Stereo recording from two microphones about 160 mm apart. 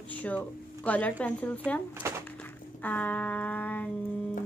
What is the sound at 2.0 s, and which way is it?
Music, 15° right (ahead or behind).